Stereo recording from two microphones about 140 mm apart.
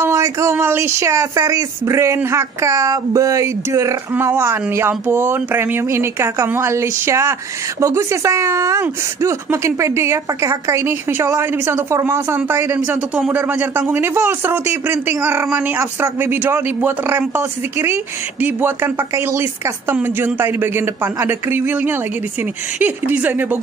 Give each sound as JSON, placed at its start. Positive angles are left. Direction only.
{"t": 0.0, "sound": "speech", "side_deg": -20}